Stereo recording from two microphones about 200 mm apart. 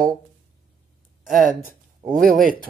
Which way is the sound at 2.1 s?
45° right (ahead or behind).